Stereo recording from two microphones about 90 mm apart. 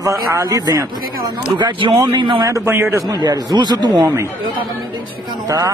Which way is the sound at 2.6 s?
25° right (ahead or behind).